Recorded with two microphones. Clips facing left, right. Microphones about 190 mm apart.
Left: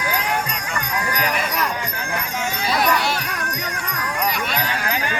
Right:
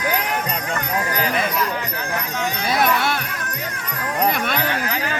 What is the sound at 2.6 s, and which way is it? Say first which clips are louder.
Music: even; 55° right (ahead or behind).